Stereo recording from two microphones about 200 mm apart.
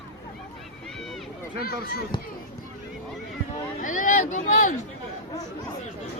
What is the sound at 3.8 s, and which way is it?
Speech, 40° left (ahead or behind).